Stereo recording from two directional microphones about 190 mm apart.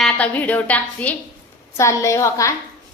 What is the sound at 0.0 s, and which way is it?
A woman's voice, 10° left (ahead or behind).